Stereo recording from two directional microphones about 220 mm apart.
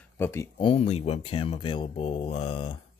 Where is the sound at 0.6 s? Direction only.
25° left (ahead or behind).